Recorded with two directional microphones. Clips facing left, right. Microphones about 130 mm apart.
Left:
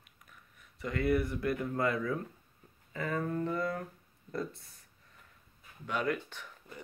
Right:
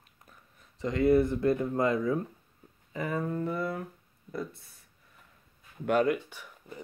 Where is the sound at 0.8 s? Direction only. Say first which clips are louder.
Right 7 dB; 25° right (ahead or behind); by 3.8 s 5° right (ahead or behind).